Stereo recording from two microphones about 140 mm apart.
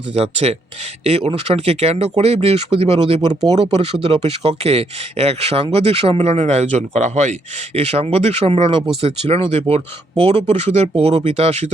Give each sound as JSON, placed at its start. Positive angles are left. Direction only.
{"t": 0.1, "sound": "speech", "side_deg": -50}
{"t": 3.4, "sound": "speech", "side_deg": -30}
{"t": 4.0, "sound": "speech", "side_deg": -45}